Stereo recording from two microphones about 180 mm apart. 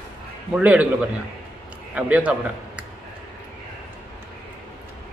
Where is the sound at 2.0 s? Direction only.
10° right (ahead or behind).